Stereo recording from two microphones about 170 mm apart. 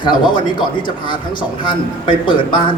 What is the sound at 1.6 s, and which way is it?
A man's voice, 30° left (ahead or behind).